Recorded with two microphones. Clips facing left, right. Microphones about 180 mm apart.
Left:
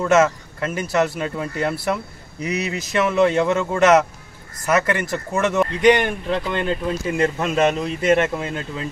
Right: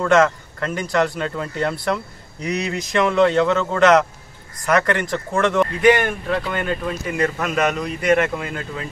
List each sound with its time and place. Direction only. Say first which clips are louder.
0.0 s speech: even; 5° left (ahead or behind); by 8.8 s 25° left (ahead or behind)